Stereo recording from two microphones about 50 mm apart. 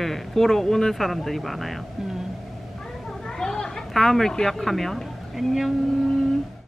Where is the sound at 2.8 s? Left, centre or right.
Centre.